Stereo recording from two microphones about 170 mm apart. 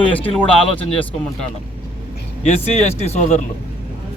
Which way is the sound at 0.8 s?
30° left (ahead or behind).